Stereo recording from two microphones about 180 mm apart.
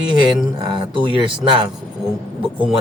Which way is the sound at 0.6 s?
25° right (ahead or behind).